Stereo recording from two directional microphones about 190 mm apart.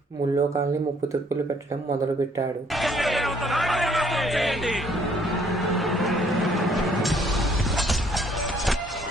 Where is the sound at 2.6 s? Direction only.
Centre (ahead or behind).